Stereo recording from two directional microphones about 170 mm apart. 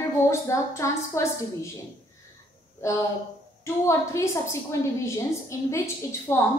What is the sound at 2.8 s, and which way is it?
A woman's voice, 15° left (ahead or behind).